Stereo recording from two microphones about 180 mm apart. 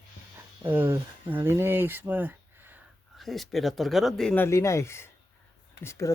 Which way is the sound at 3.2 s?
Centre (ahead or behind).